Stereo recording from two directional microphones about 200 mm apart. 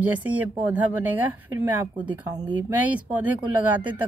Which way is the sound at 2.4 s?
20° right (ahead or behind).